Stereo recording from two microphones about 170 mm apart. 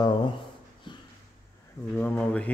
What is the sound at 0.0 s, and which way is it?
Speech, 25° left (ahead or behind).